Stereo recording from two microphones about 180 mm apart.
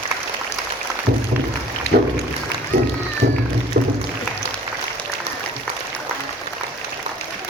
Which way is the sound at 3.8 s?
60° right (ahead or behind).